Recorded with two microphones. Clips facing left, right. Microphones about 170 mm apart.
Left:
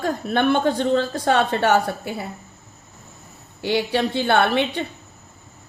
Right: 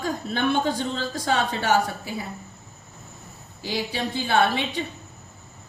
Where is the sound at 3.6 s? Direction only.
65° left (ahead or behind).